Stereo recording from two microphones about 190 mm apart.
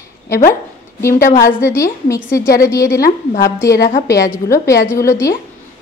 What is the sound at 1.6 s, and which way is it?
Speech, 15° left (ahead or behind).